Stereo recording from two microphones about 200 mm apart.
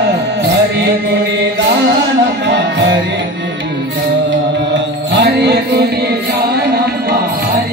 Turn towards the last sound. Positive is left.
turn(degrees=-55)  # may be behind; listen again after turning